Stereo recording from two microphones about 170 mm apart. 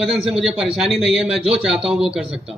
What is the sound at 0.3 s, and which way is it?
A man's voice, centre (ahead or behind).